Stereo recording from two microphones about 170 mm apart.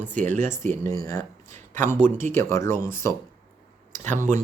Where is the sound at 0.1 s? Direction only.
50° right (ahead or behind).